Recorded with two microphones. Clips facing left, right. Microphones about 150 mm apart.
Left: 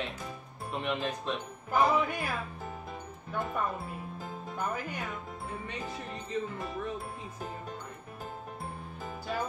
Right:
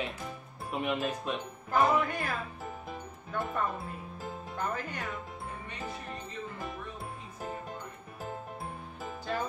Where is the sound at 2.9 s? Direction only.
Centre (ahead or behind).